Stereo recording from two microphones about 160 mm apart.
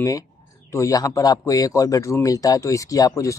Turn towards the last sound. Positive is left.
turn(degrees=20)  # may be behind; listen again after turning